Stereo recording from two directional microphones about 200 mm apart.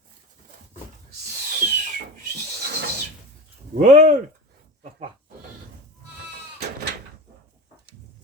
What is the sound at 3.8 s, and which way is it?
Speech, 35° right (ahead or behind).